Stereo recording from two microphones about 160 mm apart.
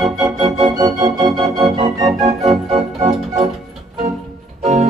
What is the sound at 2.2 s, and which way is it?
Organ, 40° right (ahead or behind).